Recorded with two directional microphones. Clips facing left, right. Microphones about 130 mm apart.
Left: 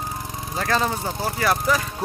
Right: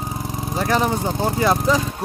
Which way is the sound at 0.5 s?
15° right (ahead or behind).